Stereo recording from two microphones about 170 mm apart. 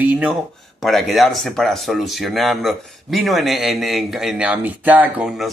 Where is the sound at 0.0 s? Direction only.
10° right (ahead or behind).